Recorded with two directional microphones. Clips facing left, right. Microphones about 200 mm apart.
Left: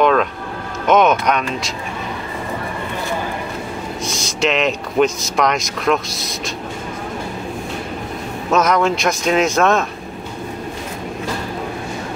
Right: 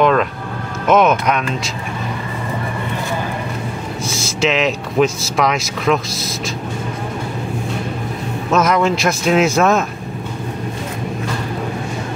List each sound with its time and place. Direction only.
0.0 s a sound: centre (ahead or behind)
0.8 s speech: centre (ahead or behind)
4.0 s speech: 5° right (ahead or behind)
8.5 s speech: centre (ahead or behind)